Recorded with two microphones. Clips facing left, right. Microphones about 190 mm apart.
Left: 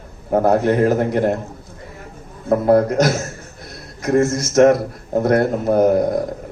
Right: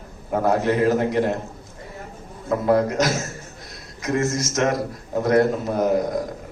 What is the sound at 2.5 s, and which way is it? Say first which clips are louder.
A man's voice: left 5 dB; 50° left (ahead or behind).